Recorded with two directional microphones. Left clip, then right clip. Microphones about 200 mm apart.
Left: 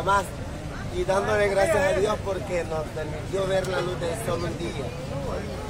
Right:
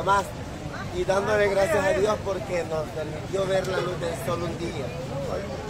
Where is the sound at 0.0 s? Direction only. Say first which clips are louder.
Even; centre (ahead or behind).